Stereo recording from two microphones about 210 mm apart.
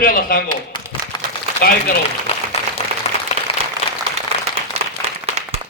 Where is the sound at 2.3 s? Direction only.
30° left (ahead or behind).